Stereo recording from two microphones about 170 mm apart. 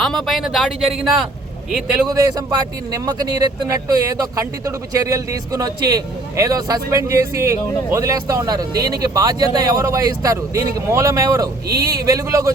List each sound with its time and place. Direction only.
0.0 s speech: centre (ahead or behind)
2.0 s speech: 20° right (ahead or behind)